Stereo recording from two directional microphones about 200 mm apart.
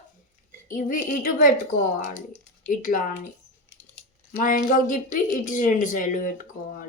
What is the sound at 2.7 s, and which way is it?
Speech, 40° left (ahead or behind).